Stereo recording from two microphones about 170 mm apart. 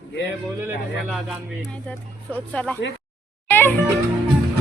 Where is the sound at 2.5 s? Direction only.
5° left (ahead or behind).